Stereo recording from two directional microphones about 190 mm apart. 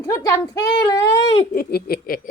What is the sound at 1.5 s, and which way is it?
Speech, 50° left (ahead or behind).